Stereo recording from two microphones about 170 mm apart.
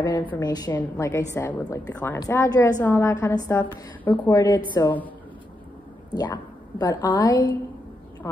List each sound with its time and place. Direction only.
0.4 s a woman's voice: 25° left (ahead or behind)
6.1 s a woman's voice: 25° left (ahead or behind)